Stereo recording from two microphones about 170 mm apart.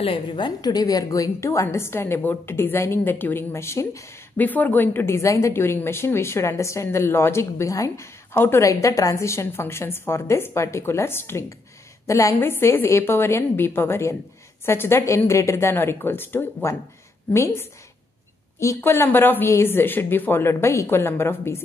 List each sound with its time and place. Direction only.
0.0 s a woman's voice: 30° left (ahead or behind); by 21.6 s 15° left (ahead or behind)